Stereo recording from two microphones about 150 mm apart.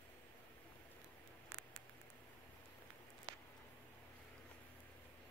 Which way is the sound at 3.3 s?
35° right (ahead or behind).